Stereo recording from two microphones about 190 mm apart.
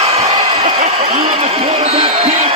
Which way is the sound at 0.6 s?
30° right (ahead or behind).